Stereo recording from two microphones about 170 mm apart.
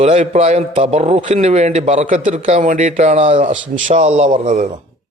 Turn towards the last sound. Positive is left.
turn(degrees=-45)  # may be behind; listen again after turning